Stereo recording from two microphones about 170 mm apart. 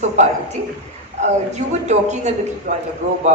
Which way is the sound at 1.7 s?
45° right (ahead or behind).